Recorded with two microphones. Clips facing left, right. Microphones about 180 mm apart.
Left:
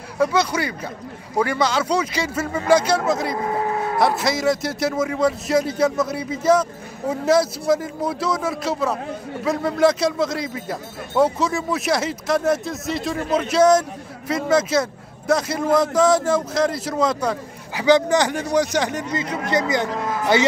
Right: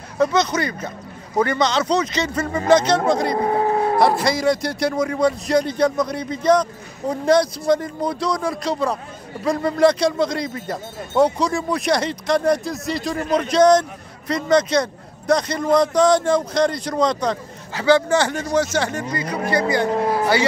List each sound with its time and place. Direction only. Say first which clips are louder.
0.2 s speech: right 1 dB; 10° left (ahead or behind)
3.4 s vehicle: right 5 dB; 35° right (ahead or behind)
4.2 s speech: right 1 dB; centre (ahead or behind); by 19.9 s 20° left (ahead or behind)